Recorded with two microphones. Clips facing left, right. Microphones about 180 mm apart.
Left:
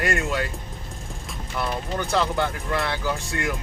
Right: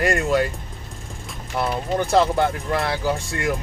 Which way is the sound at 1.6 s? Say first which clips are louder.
Right 5 dB; 40° right (ahead or behind).